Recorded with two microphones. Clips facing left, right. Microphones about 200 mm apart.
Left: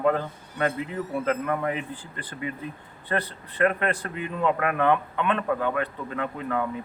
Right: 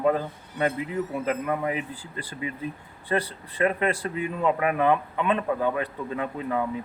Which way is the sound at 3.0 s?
10° right (ahead or behind).